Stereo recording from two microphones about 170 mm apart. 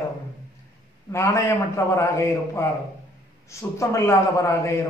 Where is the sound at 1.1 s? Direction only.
15° left (ahead or behind).